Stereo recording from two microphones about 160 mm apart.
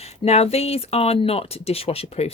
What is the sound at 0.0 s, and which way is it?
Speech, 40° left (ahead or behind).